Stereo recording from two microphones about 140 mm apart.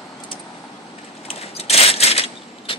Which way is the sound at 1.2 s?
45° left (ahead or behind).